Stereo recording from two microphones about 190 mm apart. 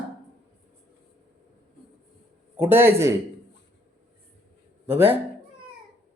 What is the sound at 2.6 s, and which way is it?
Speech, 10° right (ahead or behind).